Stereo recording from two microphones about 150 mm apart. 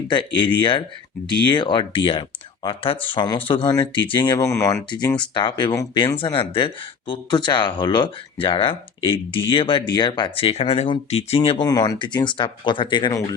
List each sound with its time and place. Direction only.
0.1 s speech: 35° left (ahead or behind)
11.6 s speech: 25° left (ahead or behind)